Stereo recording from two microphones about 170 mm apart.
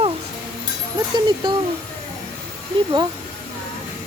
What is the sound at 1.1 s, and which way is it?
Speech, 25° right (ahead or behind).